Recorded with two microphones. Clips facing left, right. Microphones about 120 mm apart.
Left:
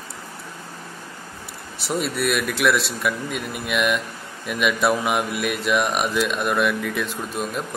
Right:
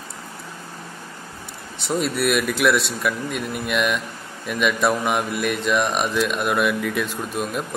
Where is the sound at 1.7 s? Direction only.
Centre (ahead or behind).